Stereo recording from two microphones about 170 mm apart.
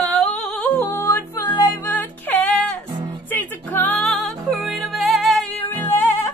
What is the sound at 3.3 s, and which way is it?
Music, 10° left (ahead or behind).